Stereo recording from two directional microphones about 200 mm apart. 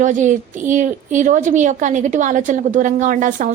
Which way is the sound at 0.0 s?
40° right (ahead or behind).